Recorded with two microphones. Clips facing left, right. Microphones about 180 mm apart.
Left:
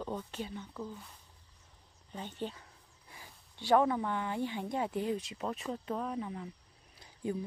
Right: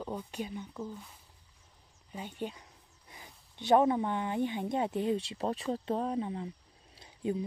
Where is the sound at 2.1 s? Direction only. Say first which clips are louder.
Right 1 dB; 10° right (ahead or behind).